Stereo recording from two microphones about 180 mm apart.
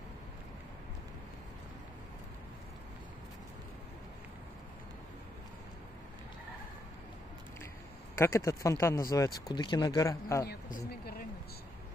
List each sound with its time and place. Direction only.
8.2 s speech: 15° left (ahead or behind)
10.4 s a woman's voice: 60° left (ahead or behind)